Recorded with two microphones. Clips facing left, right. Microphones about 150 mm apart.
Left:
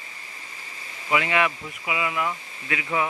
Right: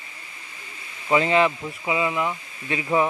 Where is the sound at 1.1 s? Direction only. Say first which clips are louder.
Right 4 dB; 30° right (ahead or behind).